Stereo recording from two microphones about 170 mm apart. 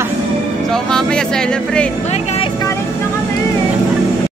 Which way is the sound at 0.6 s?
5° left (ahead or behind).